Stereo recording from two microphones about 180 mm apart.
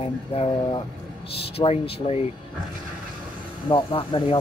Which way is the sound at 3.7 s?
30° left (ahead or behind).